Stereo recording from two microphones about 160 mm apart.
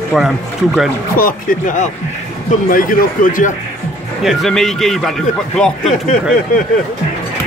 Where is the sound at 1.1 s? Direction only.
60° left (ahead or behind).